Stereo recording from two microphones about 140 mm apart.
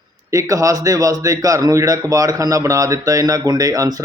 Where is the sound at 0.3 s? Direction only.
25° right (ahead or behind).